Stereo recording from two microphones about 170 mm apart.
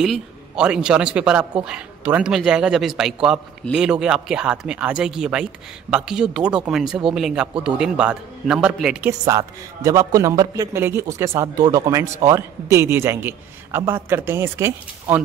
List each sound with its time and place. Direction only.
0.0 s speech: 5° right (ahead or behind)
9.2 s a man's voice: 20° right (ahead or behind)